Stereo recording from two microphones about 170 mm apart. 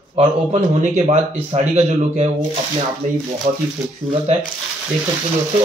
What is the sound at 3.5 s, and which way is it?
Speech, 50° right (ahead or behind).